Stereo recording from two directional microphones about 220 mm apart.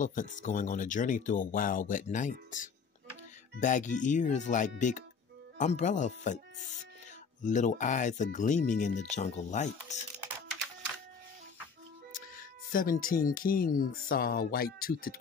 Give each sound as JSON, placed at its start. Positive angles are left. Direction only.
{"t": 0.0, "sound": "speech", "side_deg": 35}
{"t": 7.4, "sound": "speech", "side_deg": 35}
{"t": 12.7, "sound": "speech", "side_deg": 40}